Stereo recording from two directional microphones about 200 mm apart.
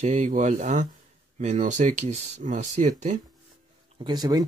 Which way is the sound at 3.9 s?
20° right (ahead or behind).